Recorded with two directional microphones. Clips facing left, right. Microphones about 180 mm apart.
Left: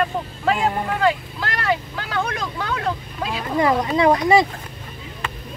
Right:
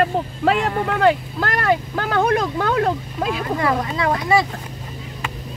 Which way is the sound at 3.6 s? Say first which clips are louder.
Left 7 dB; 20° left (ahead or behind).